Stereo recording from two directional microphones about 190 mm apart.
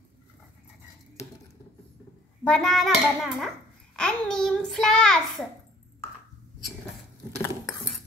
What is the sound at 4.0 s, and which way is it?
A child's voice, 5° left (ahead or behind).